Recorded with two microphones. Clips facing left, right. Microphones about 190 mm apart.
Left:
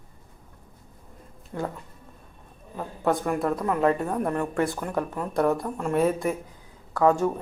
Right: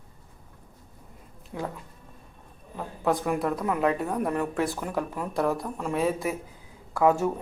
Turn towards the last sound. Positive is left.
turn(degrees=-10)  # may be behind; listen again after turning